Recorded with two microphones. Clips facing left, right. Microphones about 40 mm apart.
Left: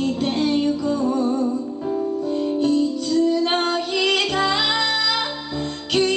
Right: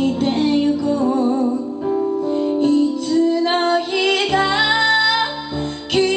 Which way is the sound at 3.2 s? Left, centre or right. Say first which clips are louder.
Right 2 dB; centre.